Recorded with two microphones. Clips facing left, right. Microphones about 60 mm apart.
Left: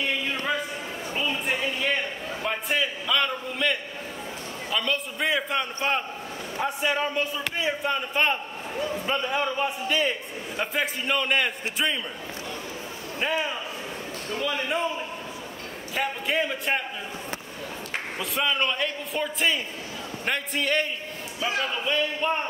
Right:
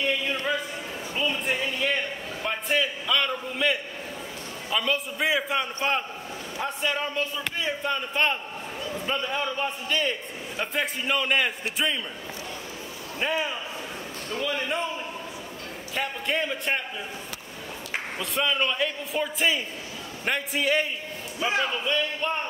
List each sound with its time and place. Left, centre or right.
0.0 s a sound: centre
4.6 s a man's voice: centre
13.2 s a man's voice: centre
15.9 s a man's voice: centre
18.2 s a man's voice: centre
21.4 s speech: right
21.8 s a man's voice: centre